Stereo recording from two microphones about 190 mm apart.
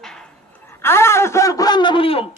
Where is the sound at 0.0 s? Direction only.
5° left (ahead or behind).